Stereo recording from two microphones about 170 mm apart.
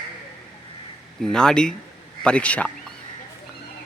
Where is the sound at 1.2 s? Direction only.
5° left (ahead or behind).